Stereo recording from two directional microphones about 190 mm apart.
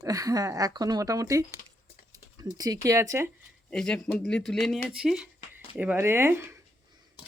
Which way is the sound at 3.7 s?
5° left (ahead or behind).